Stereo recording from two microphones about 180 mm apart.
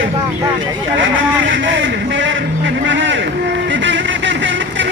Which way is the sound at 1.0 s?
90° right.